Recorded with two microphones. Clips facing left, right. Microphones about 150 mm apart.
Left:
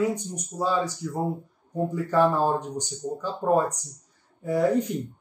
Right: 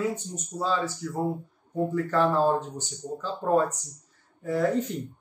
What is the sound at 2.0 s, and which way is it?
Speech, 15° left (ahead or behind).